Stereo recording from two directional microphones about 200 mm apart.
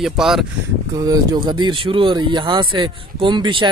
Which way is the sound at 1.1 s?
20° right (ahead or behind).